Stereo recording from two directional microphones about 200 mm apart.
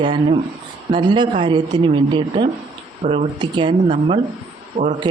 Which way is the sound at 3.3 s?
25° right (ahead or behind).